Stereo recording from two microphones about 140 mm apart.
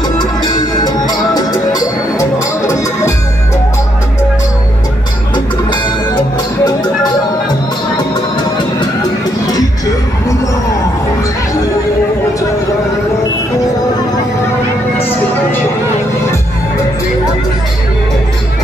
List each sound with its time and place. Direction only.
0.2 s music: 30° left (ahead or behind)
5.3 s music: 30° left (ahead or behind)